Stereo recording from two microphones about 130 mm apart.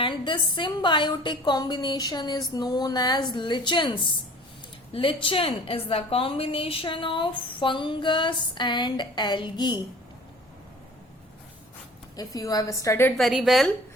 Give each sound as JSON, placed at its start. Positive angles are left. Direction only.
{"t": 0.0, "sound": "a woman's voice", "side_deg": 40}
{"t": 12.1, "sound": "a woman's voice", "side_deg": 30}
{"t": 13.1, "sound": "a woman's voice", "side_deg": 0}